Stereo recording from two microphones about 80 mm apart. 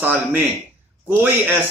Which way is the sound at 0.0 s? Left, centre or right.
Right.